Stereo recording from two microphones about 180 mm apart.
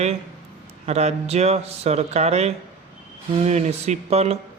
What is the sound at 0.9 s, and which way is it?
Speech, 35° right (ahead or behind).